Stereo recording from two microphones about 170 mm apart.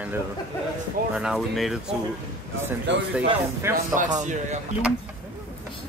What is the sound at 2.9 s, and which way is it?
Speech, 90° right.